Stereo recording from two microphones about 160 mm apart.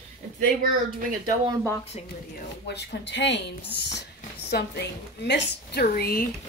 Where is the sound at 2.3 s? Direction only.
90° left.